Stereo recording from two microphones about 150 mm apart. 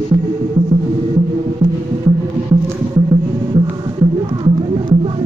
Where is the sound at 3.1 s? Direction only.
30° right (ahead or behind).